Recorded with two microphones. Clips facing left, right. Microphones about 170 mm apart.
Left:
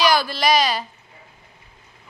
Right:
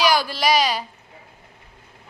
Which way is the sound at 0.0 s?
10° right (ahead or behind).